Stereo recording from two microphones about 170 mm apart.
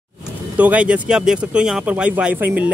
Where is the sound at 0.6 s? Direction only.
5° right (ahead or behind).